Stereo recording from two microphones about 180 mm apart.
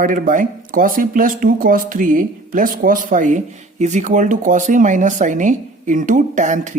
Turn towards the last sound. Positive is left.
turn(degrees=-45)  # may be behind; listen again after turning